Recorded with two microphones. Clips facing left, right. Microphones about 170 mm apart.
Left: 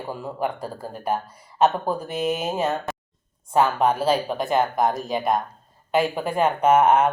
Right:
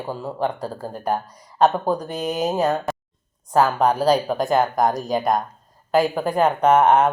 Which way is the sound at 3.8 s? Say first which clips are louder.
Right 3 dB; 40° right (ahead or behind).